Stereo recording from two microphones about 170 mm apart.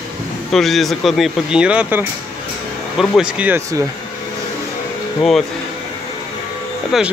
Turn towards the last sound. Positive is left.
turn(degrees=0)  # may be behind; listen again after turning